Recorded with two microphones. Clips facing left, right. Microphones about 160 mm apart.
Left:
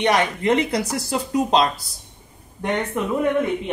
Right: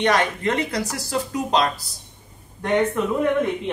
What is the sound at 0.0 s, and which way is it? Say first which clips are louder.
Speech: left 1 dB; 15° left (ahead or behind).